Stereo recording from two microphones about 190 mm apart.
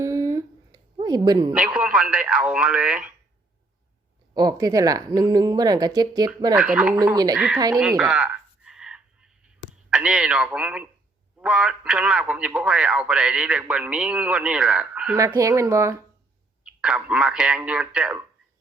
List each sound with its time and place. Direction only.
0.0 s a sound: 20° right (ahead or behind)
0.9 s speech: 20° right (ahead or behind)
1.5 s a man's voice: 5° right (ahead or behind)
4.4 s a woman's voice: 20° right (ahead or behind)
6.6 s a man's voice: 5° right (ahead or behind)
7.0 s a woman's voice: 20° right (ahead or behind)
7.3 s speech: 5° right (ahead or behind)
7.8 s a sound: 5° right (ahead or behind)
9.9 s a man's voice: 5° right (ahead or behind)
15.4 s a man's voice: 15° right (ahead or behind)